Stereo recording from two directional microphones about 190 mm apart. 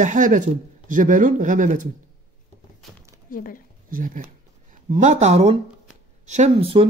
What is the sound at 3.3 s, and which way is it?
Speech, 45° left (ahead or behind).